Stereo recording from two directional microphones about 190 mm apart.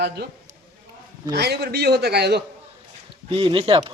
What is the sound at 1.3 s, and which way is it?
Speech, 60° right (ahead or behind).